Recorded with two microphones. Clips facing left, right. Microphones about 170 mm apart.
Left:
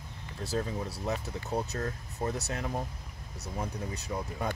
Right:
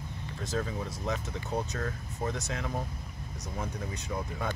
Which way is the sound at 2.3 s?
35° left (ahead or behind).